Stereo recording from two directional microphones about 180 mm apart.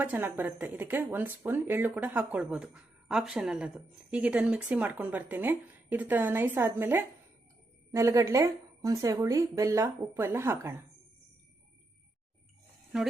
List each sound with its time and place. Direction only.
0.0 s speech: 10° right (ahead or behind)